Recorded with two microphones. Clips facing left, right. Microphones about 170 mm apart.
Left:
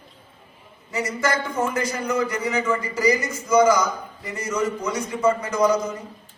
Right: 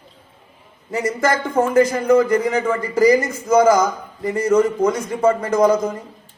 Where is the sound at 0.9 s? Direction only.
50° right (ahead or behind).